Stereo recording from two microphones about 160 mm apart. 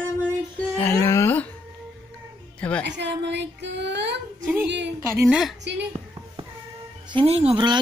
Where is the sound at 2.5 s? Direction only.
10° left (ahead or behind).